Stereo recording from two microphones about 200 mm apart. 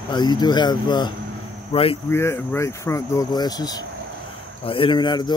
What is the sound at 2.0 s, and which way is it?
Speech, 10° left (ahead or behind).